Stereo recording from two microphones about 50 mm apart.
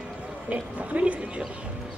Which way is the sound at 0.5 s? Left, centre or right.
Right.